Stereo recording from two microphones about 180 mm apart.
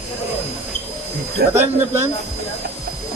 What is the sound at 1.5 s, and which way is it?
Speech, 15° right (ahead or behind).